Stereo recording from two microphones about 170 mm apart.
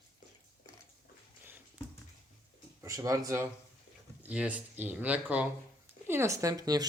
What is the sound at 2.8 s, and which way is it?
Speech, 20° right (ahead or behind).